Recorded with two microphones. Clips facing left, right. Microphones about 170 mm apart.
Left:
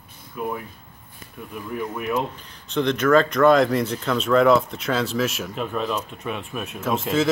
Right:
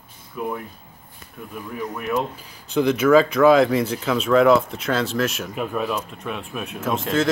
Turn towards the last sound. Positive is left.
turn(degrees=0)  # may be behind; listen again after turning